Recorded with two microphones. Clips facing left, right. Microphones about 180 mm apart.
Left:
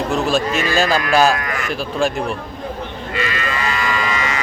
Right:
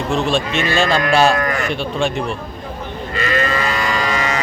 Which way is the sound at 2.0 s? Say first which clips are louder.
Left 2 dB; centre (ahead or behind).